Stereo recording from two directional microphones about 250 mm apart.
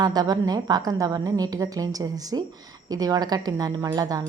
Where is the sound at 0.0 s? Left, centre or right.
Centre.